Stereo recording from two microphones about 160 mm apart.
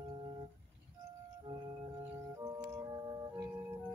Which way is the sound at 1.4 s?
25° right (ahead or behind).